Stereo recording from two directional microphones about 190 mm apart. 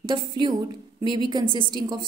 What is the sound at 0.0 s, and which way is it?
A woman's voice, 25° right (ahead or behind).